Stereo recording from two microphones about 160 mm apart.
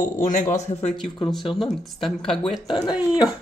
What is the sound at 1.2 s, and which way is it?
Speech, centre (ahead or behind).